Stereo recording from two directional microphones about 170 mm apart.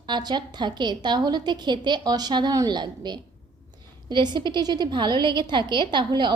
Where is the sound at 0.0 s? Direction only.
25° right (ahead or behind).